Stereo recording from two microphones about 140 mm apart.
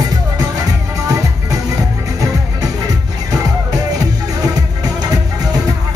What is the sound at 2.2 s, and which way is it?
Music, 25° right (ahead or behind).